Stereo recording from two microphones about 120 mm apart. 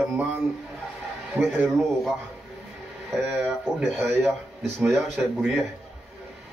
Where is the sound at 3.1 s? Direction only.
10° right (ahead or behind).